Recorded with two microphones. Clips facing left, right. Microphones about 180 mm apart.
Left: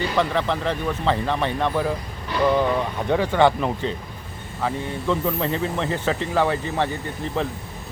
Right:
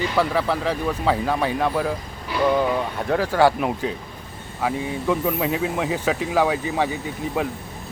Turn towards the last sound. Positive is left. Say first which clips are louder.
# right 1 dB
turn(degrees=-10)  # may be behind; listen again after turning